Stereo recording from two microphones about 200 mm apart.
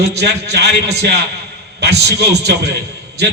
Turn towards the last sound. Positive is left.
turn(degrees=-55)  # may be behind; listen again after turning